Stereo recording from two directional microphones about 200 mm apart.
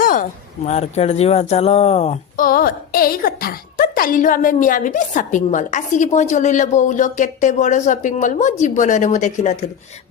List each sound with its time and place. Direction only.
0.0 s a woman's voice: 40° left (ahead or behind)
2.3 s a woman's voice: 45° left (ahead or behind)